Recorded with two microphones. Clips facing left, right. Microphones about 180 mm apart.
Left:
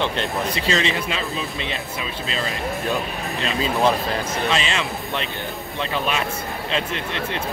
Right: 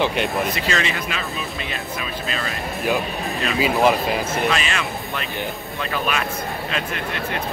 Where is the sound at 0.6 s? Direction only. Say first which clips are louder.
Left 2 dB; 25° left (ahead or behind).